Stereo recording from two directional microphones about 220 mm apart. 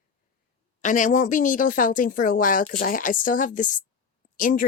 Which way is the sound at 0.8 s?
35° left (ahead or behind).